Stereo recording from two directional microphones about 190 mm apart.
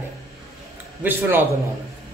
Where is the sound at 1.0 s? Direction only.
10° right (ahead or behind).